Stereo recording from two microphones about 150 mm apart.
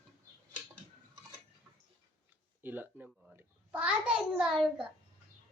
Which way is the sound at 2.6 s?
15° right (ahead or behind).